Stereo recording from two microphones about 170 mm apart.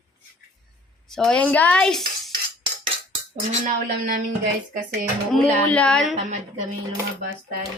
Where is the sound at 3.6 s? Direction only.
55° right (ahead or behind).